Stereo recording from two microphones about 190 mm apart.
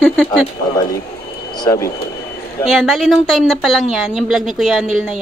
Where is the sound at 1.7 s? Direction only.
15° left (ahead or behind).